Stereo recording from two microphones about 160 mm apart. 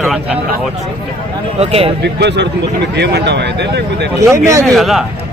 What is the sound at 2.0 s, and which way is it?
Speech, 90° right.